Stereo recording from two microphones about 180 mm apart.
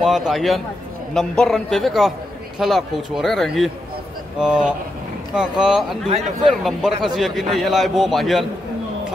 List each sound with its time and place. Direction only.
0.0 s a man's voice: centre (ahead or behind)
6.0 s speech: 35° right (ahead or behind)
6.6 s a man's voice: centre (ahead or behind)